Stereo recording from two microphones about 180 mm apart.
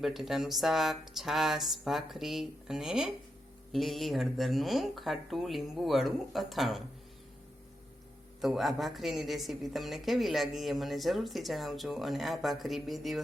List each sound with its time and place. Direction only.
0.0 s a woman's voice: centre (ahead or behind)
8.4 s a woman's voice: centre (ahead or behind)